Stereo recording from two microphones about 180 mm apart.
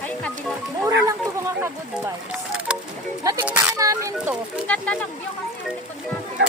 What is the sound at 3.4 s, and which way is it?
Speech, 10° right (ahead or behind).